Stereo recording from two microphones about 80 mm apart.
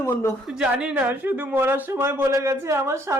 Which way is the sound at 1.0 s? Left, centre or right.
Right.